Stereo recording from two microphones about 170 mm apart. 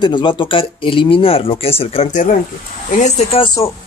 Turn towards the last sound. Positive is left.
turn(degrees=35)  # may be behind; listen again after turning